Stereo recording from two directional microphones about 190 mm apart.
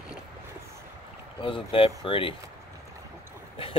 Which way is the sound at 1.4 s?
25° left (ahead or behind).